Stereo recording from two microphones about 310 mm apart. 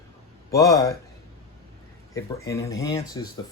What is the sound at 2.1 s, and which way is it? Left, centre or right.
Speech, centre.